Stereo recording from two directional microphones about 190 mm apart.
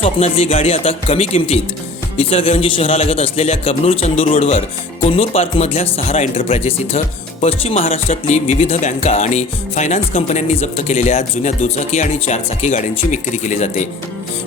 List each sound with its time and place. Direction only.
0.0 s speech: 30° left (ahead or behind)